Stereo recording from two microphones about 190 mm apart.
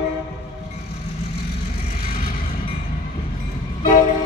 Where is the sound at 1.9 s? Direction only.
50° left (ahead or behind).